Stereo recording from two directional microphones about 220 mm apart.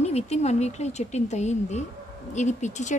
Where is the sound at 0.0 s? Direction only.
30° left (ahead or behind).